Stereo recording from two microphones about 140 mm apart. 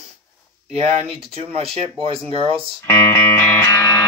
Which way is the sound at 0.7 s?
45° right (ahead or behind).